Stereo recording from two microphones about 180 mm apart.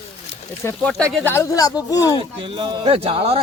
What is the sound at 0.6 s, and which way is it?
Speech, 10° left (ahead or behind).